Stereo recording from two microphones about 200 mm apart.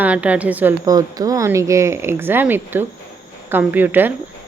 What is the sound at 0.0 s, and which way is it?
Speech, 5° right (ahead or behind).